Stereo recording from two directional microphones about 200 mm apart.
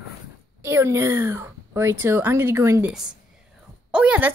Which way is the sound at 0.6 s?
10° right (ahead or behind).